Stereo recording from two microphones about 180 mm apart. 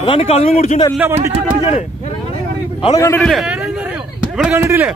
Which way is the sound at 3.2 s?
Centre (ahead or behind).